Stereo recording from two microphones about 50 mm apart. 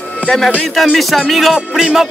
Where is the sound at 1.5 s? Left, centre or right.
Centre.